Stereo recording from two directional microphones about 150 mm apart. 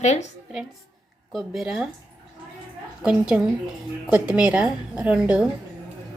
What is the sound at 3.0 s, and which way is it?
A woman's voice, 5° right (ahead or behind).